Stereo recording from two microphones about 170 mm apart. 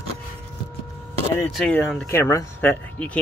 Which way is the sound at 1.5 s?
5° left (ahead or behind).